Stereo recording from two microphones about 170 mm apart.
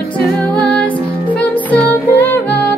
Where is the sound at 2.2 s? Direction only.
10° left (ahead or behind).